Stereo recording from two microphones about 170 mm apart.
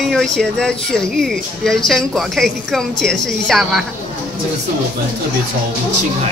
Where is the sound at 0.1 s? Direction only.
5° left (ahead or behind).